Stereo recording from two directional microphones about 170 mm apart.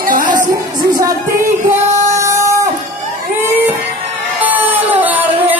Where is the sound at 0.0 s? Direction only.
50° right (ahead or behind).